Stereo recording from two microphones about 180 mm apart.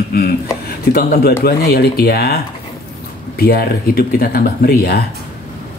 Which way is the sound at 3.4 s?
60° left (ahead or behind).